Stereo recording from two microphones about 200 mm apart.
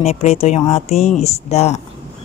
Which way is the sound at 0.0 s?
35° left (ahead or behind).